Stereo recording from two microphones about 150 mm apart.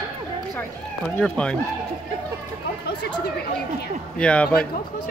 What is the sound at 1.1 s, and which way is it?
Speech, 5° left (ahead or behind).